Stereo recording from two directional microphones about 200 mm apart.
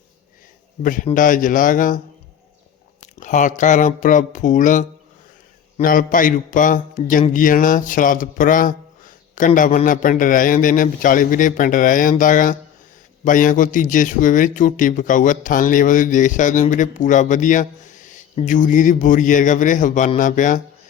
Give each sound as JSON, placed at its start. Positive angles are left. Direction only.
{"t": 0.8, "sound": "a man's voice", "side_deg": 40}
{"t": 3.0, "sound": "a man's voice", "side_deg": 40}